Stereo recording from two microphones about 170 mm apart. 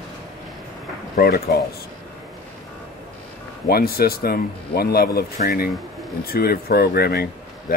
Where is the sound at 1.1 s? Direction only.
65° left (ahead or behind).